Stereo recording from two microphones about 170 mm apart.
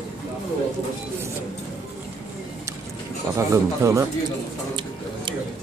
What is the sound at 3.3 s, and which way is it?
Speech, 15° right (ahead or behind).